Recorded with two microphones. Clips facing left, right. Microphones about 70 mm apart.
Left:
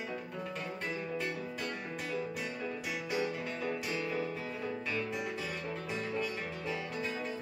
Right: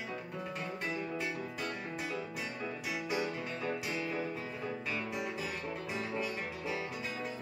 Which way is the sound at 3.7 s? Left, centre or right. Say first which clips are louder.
Left 1 dB; right.